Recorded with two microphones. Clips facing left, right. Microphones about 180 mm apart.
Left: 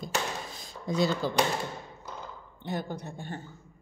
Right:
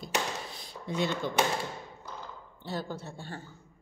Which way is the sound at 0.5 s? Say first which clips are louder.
Left 4 dB; 45° left (ahead or behind).